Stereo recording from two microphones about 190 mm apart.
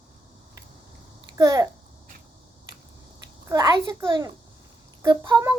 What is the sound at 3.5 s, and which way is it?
A child's voice, 20° right (ahead or behind).